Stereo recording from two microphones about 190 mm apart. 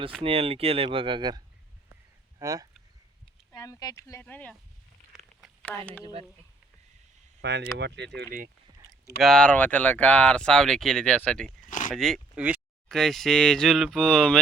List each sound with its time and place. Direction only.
0.2 s speech: 30° right (ahead or behind)
2.4 s speech: 20° right (ahead or behind)
3.5 s speech: 20° left (ahead or behind)
5.7 s speech: 5° left (ahead or behind)
7.4 s speech: 65° right (ahead or behind)
9.2 s speech: 5° left (ahead or behind)
11.7 s a sound: 45° left (ahead or behind)
11.9 s speech: centre (ahead or behind)